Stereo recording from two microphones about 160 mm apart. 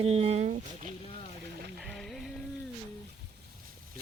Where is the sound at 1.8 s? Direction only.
Centre (ahead or behind).